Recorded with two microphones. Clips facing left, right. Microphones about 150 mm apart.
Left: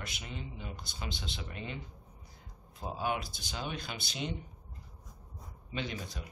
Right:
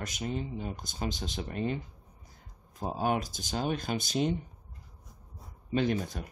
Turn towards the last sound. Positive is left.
turn(degrees=-50)  # may be behind; listen again after turning